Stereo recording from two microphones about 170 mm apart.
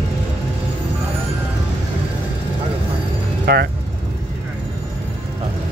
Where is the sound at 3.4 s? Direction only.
70° right (ahead or behind).